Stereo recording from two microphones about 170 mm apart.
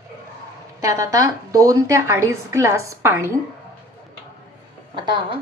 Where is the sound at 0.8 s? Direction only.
20° right (ahead or behind).